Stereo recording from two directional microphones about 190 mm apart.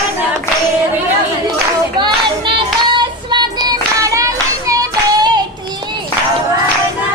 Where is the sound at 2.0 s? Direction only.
25° right (ahead or behind).